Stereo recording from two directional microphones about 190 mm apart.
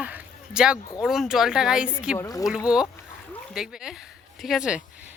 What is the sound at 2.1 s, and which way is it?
Speech, 15° left (ahead or behind).